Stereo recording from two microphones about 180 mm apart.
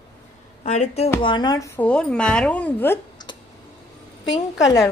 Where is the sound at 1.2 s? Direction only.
25° left (ahead or behind).